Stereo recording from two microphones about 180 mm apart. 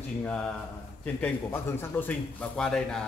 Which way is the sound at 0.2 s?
5° left (ahead or behind).